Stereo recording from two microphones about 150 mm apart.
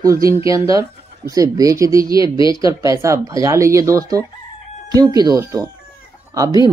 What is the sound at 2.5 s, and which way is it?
Speech, 20° right (ahead or behind).